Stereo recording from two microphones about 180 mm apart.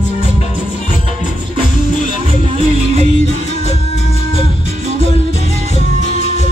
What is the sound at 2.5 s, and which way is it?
Music, 35° right (ahead or behind).